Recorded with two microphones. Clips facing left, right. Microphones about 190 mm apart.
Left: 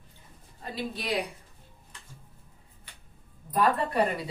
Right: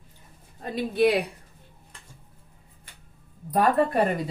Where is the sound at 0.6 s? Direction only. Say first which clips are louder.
Right 13 dB; 55° right (ahead or behind).